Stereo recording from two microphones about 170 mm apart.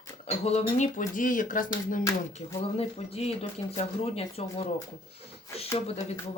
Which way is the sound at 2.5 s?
35° left (ahead or behind).